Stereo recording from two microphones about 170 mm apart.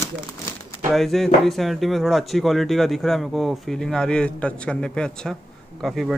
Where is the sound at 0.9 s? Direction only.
Centre (ahead or behind).